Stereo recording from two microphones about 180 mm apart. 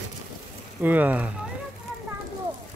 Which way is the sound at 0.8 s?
10° right (ahead or behind).